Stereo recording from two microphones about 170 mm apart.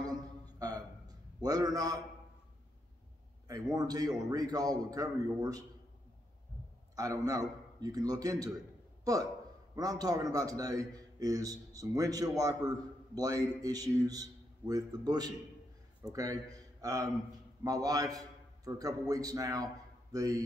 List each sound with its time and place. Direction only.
0.0 s a sound: 20° right (ahead or behind)
3.4 s a man's voice: 20° right (ahead or behind)
7.0 s a man's voice: 20° right (ahead or behind)